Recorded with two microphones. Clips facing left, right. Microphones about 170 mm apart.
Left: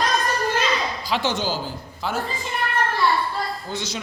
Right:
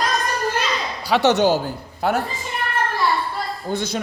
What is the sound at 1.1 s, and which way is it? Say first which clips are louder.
A man's voice: right 9 dB; 70° right (ahead or behind).